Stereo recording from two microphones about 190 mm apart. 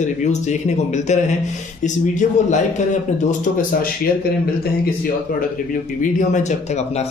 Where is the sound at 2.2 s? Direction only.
40° left (ahead or behind).